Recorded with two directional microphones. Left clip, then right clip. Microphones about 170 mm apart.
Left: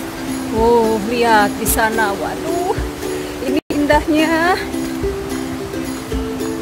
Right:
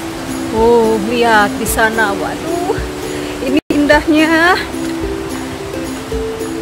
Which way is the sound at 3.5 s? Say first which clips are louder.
Right 4 dB; 15° right (ahead or behind).